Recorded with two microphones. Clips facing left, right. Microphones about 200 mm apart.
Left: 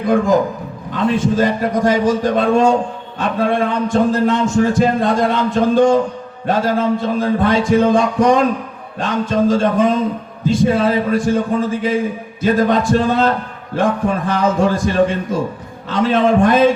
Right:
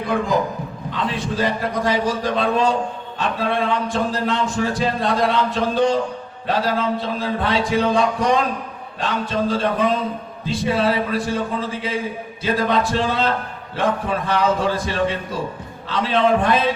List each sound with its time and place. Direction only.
0.9 s a man's voice: 45° left (ahead or behind)